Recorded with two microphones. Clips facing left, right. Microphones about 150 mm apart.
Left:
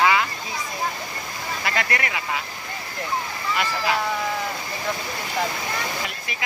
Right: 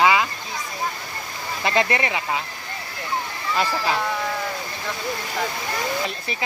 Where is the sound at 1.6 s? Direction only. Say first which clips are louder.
Right 6 dB; 25° right (ahead or behind).